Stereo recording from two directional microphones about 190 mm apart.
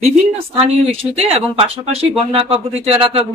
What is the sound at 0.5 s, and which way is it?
Speech, 35° right (ahead or behind).